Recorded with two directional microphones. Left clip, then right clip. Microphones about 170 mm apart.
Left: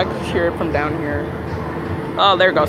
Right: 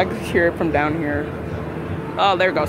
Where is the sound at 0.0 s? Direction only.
50° right (ahead or behind).